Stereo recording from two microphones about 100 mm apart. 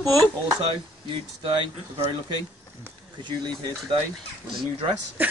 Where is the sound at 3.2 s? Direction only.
45° right (ahead or behind).